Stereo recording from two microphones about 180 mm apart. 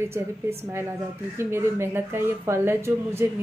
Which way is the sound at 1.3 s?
15° right (ahead or behind).